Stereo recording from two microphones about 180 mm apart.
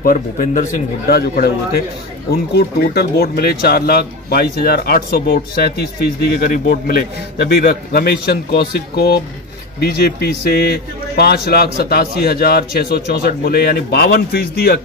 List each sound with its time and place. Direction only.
0.0 s a man's voice: 50° left (ahead or behind)
1.1 s speech: 60° left (ahead or behind)
2.5 s speech: 60° left (ahead or behind)